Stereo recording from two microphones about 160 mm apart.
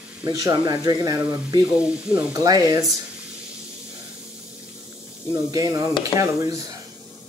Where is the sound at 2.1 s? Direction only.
20° right (ahead or behind).